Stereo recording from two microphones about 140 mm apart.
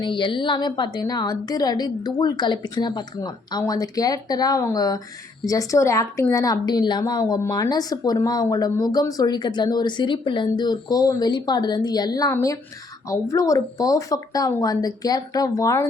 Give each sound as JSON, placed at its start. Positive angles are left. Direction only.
{"t": 0.0, "sound": "speech", "side_deg": 35}